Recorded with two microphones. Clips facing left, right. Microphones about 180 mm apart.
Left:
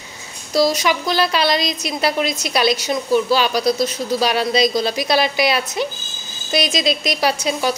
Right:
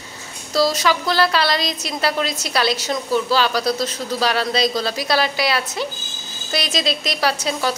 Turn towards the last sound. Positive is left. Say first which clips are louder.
# left 2 dB
turn(degrees=15)  # may be behind; listen again after turning